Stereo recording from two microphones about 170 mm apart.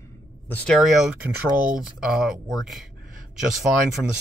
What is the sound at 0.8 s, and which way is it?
Speech, centre (ahead or behind).